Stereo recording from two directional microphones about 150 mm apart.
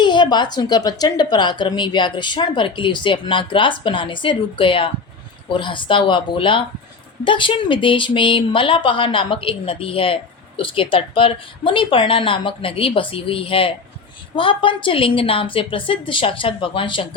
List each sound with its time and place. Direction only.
0.0 s a woman's voice: 30° left (ahead or behind)